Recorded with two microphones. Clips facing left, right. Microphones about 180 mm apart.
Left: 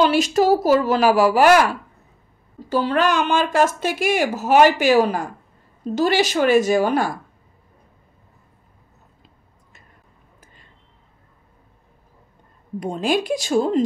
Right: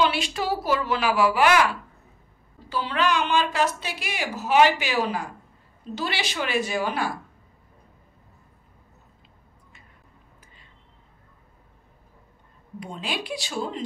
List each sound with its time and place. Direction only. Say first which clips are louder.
0.0 s a woman's voice: left 8 dB; 45° left (ahead or behind)
12.8 s a woman's voice: left 11 dB; 45° left (ahead or behind)